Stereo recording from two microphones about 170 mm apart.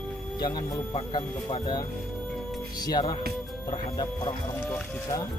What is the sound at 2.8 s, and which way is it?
Speech, 25° left (ahead or behind).